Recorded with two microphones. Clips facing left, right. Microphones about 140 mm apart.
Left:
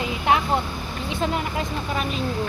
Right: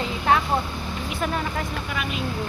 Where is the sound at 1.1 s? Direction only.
20° left (ahead or behind).